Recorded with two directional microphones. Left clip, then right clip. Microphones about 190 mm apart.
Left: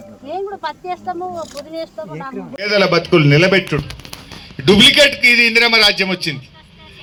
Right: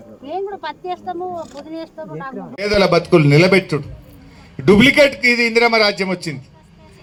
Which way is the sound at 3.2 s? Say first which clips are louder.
Even; 20° left (ahead or behind).